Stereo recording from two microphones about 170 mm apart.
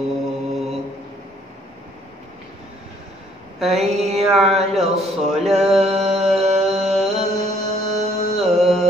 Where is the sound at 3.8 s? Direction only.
Centre (ahead or behind).